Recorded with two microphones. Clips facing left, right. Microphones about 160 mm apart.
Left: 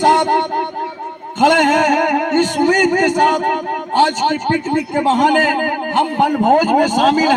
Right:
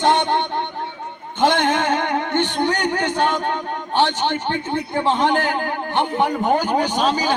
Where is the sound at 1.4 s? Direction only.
45° left (ahead or behind).